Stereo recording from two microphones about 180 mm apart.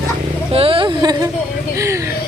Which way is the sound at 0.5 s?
30° right (ahead or behind).